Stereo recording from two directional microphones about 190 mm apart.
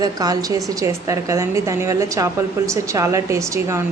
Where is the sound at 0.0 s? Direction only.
20° right (ahead or behind).